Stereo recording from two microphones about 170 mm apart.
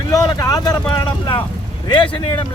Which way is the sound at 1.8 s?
30° left (ahead or behind).